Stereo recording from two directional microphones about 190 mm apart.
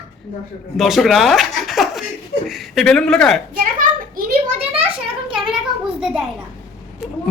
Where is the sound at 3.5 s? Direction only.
45° right (ahead or behind).